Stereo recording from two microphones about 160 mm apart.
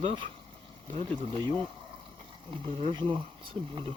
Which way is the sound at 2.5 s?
30° right (ahead or behind).